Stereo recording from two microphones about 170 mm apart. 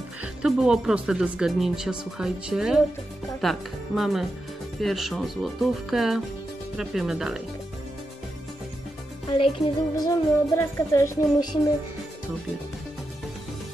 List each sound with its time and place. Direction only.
0.2 s speech: 5° right (ahead or behind)
9.6 s speech: centre (ahead or behind)
9.9 s music: 20° left (ahead or behind)